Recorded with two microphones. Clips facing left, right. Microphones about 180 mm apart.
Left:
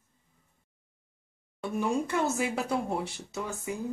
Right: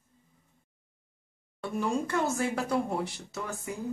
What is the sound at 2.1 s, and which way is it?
Speech, 20° left (ahead or behind).